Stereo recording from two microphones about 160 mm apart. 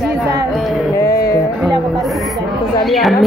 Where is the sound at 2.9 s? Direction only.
Centre (ahead or behind).